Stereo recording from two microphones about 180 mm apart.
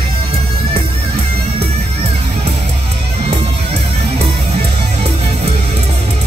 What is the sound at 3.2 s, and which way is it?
Music, 30° right (ahead or behind).